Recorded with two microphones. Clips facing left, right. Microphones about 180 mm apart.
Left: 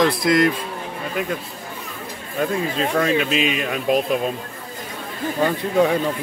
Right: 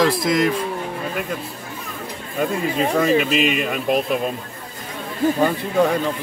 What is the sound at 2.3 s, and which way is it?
Speech, 5° right (ahead or behind).